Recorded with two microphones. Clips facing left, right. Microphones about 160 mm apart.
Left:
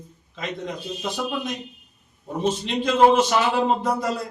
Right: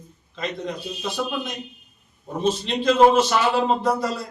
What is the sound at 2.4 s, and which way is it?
Speech, 15° left (ahead or behind).